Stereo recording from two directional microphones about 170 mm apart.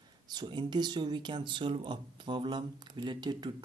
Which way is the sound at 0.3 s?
25° right (ahead or behind).